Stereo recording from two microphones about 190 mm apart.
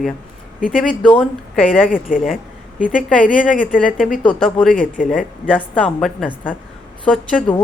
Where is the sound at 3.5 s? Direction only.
45° left (ahead or behind).